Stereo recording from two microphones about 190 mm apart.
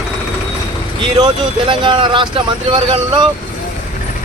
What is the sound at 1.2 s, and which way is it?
Speech, 20° right (ahead or behind).